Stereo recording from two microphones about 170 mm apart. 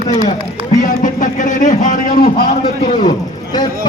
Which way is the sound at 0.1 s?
40° left (ahead or behind).